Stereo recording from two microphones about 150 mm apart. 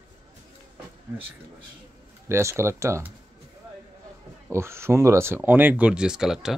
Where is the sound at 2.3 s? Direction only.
20° right (ahead or behind).